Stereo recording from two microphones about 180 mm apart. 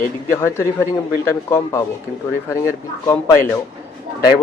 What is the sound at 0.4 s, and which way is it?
Speech, 15° left (ahead or behind).